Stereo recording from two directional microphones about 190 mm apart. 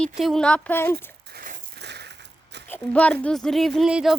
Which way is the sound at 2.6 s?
10° left (ahead or behind).